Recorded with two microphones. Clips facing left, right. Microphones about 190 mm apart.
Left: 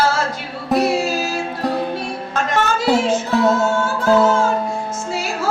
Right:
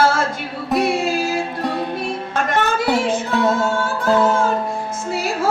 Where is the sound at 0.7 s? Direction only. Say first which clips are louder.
Left 2 dB; centre (ahead or behind).